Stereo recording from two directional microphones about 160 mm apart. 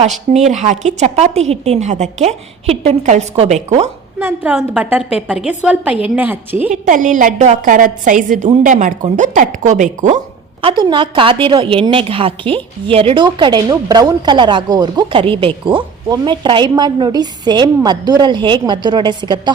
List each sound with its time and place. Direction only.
0.3 s a woman's voice: 45° right (ahead or behind)
4.2 s a woman's voice: 10° right (ahead or behind)
6.7 s a woman's voice: 55° right (ahead or behind)
10.6 s a woman's voice: 30° right (ahead or behind)